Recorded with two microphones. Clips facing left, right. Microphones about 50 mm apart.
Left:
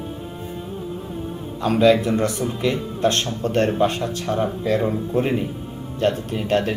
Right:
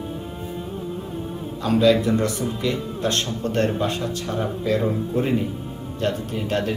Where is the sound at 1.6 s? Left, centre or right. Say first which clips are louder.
Left 2 dB; left.